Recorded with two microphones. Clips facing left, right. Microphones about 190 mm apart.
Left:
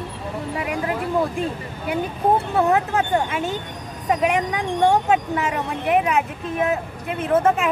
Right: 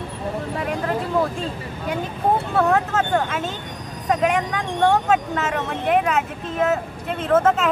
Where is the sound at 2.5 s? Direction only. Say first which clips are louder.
Even; 15° left (ahead or behind).